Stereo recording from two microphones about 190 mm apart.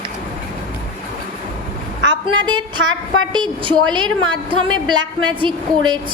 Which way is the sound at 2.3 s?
25° right (ahead or behind).